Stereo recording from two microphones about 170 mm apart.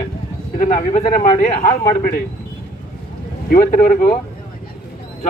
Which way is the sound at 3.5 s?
55° left (ahead or behind).